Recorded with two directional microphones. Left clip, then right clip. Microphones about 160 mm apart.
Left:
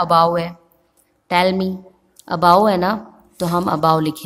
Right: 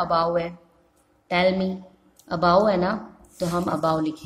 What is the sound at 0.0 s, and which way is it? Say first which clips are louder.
A woman's voice: left 7 dB; 35° left (ahead or behind).